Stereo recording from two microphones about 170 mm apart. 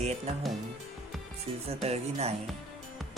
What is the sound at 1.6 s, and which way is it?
Speech, 40° right (ahead or behind).